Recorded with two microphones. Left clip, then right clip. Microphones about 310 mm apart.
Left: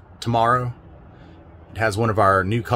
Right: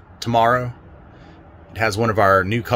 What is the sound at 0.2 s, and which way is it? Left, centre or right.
Speech, centre.